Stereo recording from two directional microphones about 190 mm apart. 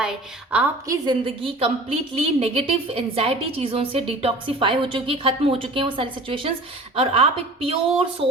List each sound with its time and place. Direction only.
0.0 s a woman's voice: 5° right (ahead or behind)
0.9 s a woman's voice: 25° right (ahead or behind)